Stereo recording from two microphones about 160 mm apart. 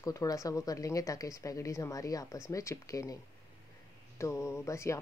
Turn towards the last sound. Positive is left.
turn(degrees=15)  # may be behind; listen again after turning